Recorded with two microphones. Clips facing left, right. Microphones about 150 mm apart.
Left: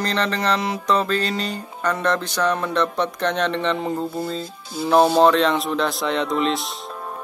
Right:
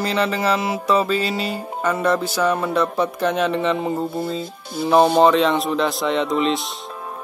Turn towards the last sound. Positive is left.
turn(degrees=0)  # may be behind; listen again after turning